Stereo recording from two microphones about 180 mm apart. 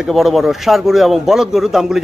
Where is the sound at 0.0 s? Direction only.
Centre (ahead or behind).